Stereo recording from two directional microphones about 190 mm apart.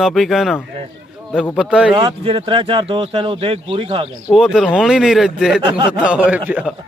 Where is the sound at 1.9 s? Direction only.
25° right (ahead or behind).